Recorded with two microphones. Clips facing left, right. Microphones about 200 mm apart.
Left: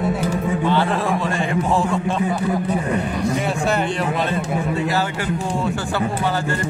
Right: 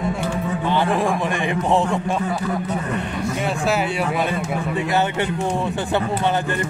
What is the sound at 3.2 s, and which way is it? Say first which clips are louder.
Speech: right 1 dB; centre (ahead or behind).